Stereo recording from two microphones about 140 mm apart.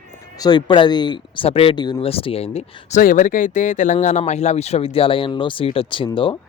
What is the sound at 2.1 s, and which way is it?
Speech, 45° left (ahead or behind).